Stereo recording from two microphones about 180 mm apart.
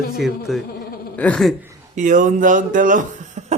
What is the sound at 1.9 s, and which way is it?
Speech, 45° right (ahead or behind).